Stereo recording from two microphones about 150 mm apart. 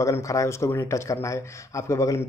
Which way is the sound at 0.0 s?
20° left (ahead or behind).